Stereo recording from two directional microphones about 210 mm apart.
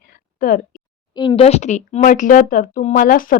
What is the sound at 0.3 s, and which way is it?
Speech, 40° left (ahead or behind).